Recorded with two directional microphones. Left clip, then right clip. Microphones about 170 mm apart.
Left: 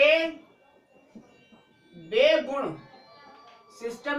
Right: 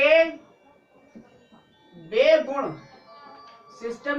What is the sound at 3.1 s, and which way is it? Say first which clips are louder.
Music: right 5 dB; 50° left (ahead or behind).